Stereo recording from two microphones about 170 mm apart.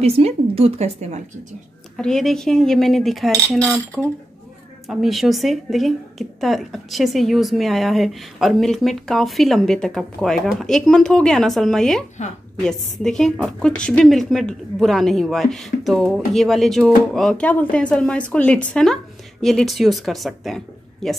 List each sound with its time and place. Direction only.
0.0 s speech: 35° right (ahead or behind)
2.0 s a woman's voice: 5° left (ahead or behind)
4.8 s a woman's voice: centre (ahead or behind)
12.2 s a woman's voice: 45° left (ahead or behind)
13.0 s a woman's voice: 5° left (ahead or behind)